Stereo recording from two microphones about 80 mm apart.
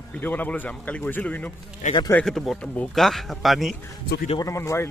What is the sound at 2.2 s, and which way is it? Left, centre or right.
A man's voice, centre.